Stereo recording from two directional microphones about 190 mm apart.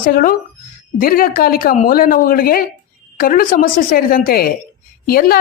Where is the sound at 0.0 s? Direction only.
50° left (ahead or behind).